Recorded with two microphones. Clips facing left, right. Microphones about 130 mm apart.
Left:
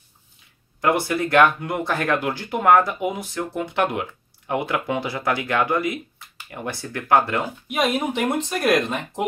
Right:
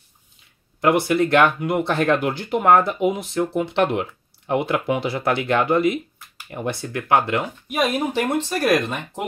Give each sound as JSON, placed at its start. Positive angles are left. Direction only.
{"t": 0.7, "sound": "speech", "side_deg": -25}
{"t": 7.8, "sound": "speech", "side_deg": 0}